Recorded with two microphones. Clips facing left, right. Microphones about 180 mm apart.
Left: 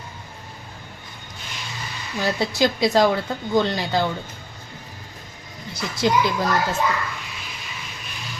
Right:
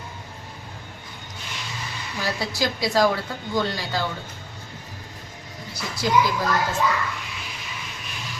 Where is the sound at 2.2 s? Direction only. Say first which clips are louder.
Left 5 dB; 25° left (ahead or behind).